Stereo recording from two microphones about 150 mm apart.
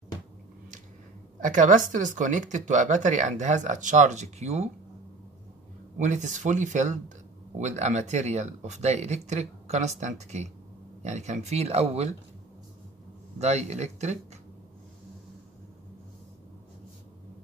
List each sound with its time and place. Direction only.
1.4 s speech: 55° right (ahead or behind)
5.9 s speech: 55° right (ahead or behind)
13.4 s speech: 45° right (ahead or behind)